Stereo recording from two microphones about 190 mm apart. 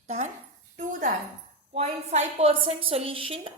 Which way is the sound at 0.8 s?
40° right (ahead or behind).